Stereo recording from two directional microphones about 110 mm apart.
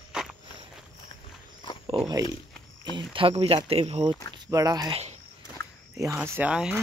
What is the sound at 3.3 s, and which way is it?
Speech, 65° right (ahead or behind).